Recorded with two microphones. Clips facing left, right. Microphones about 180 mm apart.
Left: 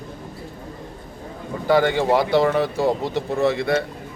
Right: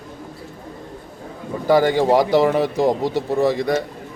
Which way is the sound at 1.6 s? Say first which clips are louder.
Right 2 dB; 10° right (ahead or behind).